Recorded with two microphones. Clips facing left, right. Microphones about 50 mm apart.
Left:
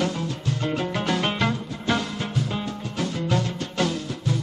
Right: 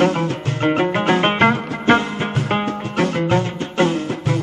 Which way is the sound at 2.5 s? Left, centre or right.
Right.